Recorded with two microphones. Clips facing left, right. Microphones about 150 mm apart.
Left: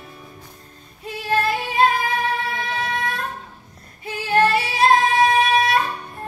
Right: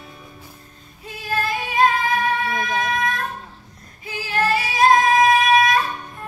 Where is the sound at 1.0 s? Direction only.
30° left (ahead or behind).